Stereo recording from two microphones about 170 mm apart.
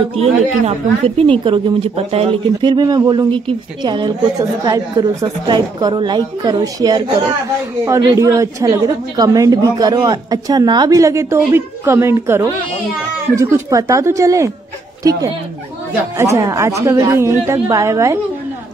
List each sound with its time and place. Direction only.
0.1 s a woman's voice: 35° right (ahead or behind); by 14.5 s 20° right (ahead or behind)
16.2 s a woman's voice: 20° right (ahead or behind)